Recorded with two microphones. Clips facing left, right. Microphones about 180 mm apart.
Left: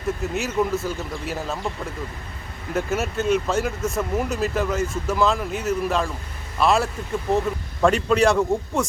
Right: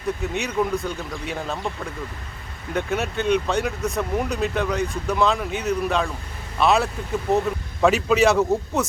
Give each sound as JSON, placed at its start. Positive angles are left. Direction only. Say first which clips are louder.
{"t": 0.2, "sound": "speech", "louder": "left 1 dB", "side_deg": 0}